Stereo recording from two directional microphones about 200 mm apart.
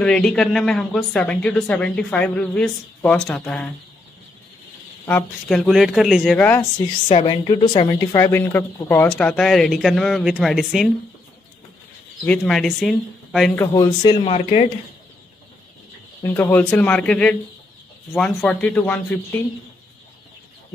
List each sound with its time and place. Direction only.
0.0 s speech: 5° left (ahead or behind)
5.0 s speech: 5° left (ahead or behind)
7.1 s speech: 25° left (ahead or behind); by 10.9 s centre (ahead or behind)
12.3 s speech: centre (ahead or behind)
13.6 s speech: 15° left (ahead or behind)
16.2 s speech: 10° left (ahead or behind)